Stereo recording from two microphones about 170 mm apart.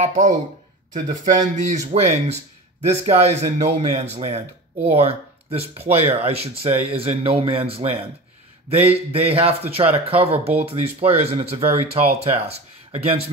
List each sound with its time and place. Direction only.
0.0 s speech: 45° right (ahead or behind)